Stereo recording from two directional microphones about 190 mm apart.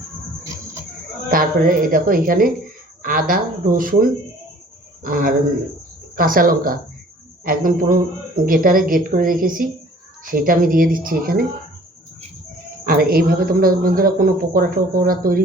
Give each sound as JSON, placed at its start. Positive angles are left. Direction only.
{"t": 1.3, "sound": "speech", "side_deg": -50}
{"t": 5.0, "sound": "speech", "side_deg": -45}
{"t": 12.8, "sound": "speech", "side_deg": -50}